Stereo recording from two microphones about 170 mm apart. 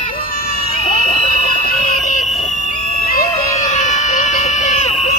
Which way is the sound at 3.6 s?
45° left (ahead or behind).